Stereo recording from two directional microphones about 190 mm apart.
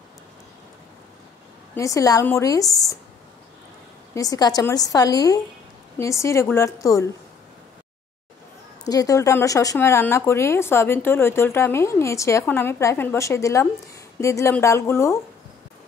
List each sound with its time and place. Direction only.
1.8 s speech: 15° left (ahead or behind)
4.1 s a woman's voice: 20° left (ahead or behind)
8.8 s speech: 20° left (ahead or behind)